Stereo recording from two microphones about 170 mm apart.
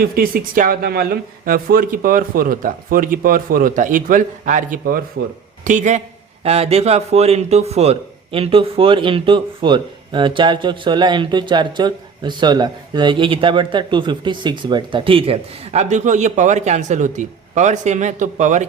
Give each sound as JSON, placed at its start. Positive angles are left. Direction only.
{"t": 0.0, "sound": "speech", "side_deg": -60}
{"t": 5.6, "sound": "a man's voice", "side_deg": -45}